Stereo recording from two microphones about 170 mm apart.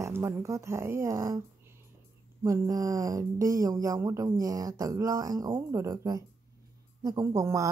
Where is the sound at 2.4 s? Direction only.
20° right (ahead or behind).